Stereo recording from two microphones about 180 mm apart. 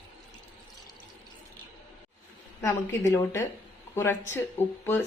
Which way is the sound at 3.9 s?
10° left (ahead or behind).